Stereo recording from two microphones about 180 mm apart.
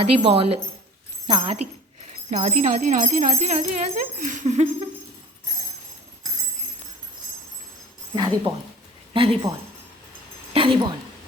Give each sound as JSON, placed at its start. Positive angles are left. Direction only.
{"t": 0.0, "sound": "speech", "side_deg": -30}
{"t": 2.3, "sound": "speech", "side_deg": -40}
{"t": 8.5, "sound": "speech", "side_deg": -20}
{"t": 9.1, "sound": "a woman's voice", "side_deg": -30}